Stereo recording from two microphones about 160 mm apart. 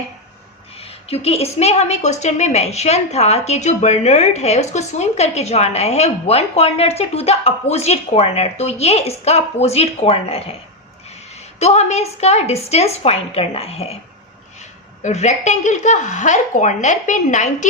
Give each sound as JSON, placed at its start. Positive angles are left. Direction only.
{"t": 0.8, "sound": "a woman's voice", "side_deg": 40}
{"t": 11.6, "sound": "a woman's voice", "side_deg": 45}
{"t": 15.0, "sound": "a woman's voice", "side_deg": 45}